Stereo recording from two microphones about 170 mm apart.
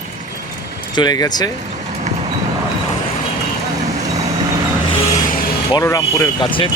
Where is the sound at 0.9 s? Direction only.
25° left (ahead or behind).